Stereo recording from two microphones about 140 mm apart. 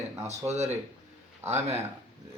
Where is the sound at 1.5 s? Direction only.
50° right (ahead or behind).